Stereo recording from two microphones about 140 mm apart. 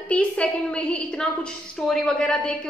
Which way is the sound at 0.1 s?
10° left (ahead or behind).